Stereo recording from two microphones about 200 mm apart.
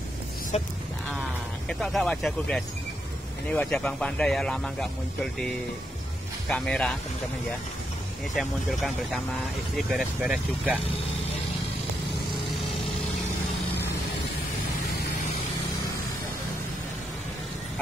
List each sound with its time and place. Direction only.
1.7 s speech: centre (ahead or behind)
6.5 s speech: 5° left (ahead or behind)
8.4 s speech: centre (ahead or behind)